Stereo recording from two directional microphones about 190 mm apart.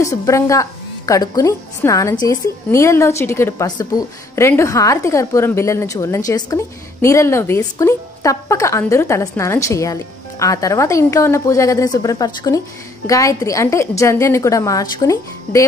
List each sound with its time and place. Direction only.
0.0 s a woman's voice: 15° left (ahead or behind)